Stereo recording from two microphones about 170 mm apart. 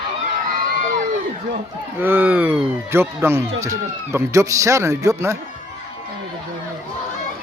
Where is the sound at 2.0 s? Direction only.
10° right (ahead or behind).